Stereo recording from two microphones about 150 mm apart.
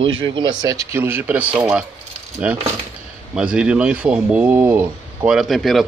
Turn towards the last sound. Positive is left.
turn(degrees=0)  # may be behind; listen again after turning